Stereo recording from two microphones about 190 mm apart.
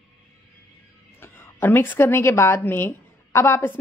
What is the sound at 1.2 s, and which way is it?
A woman's voice, 10° left (ahead or behind).